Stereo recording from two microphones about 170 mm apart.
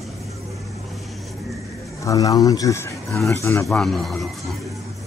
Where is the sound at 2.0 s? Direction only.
20° left (ahead or behind).